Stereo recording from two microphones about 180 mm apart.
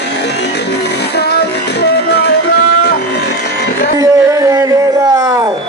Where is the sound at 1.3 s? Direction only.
65° left (ahead or behind).